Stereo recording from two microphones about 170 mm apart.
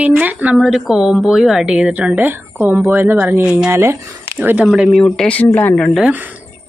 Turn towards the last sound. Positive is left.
turn(degrees=-10)  # may be behind; listen again after turning